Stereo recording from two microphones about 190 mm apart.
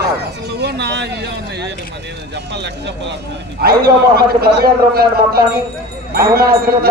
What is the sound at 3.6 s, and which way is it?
A man's voice, 55° right (ahead or behind).